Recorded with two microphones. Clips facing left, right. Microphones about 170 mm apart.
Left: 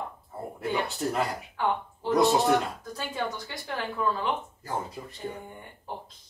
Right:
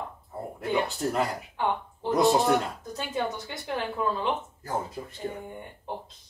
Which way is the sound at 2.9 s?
25° right (ahead or behind).